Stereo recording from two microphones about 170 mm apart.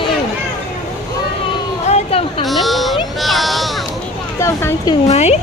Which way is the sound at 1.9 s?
40° left (ahead or behind).